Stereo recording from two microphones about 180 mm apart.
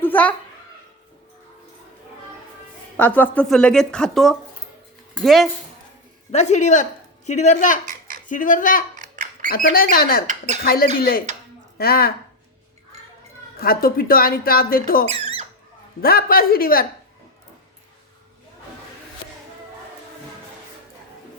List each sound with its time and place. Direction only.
0.0 s a sound: 10° left (ahead or behind)
3.0 s a woman's voice: 10° left (ahead or behind)
6.3 s speech: 40° left (ahead or behind)
7.9 s a sound: 50° right (ahead or behind)
8.3 s speech: 45° left (ahead or behind)
9.0 s a sound: 45° right (ahead or behind)
9.5 s speech: 55° left (ahead or behind)
13.6 s speech: 55° left (ahead or behind)
15.0 s squeak: 35° right (ahead or behind)
16.0 s speech: 55° left (ahead or behind)